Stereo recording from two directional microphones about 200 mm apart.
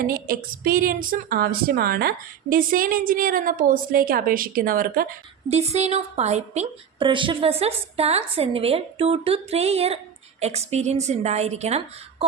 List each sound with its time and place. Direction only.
0.0 s a woman's voice: 45° right (ahead or behind)
5.5 s a woman's voice: 35° right (ahead or behind)